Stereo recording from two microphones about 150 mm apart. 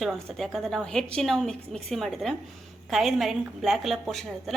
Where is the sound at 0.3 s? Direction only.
Centre (ahead or behind).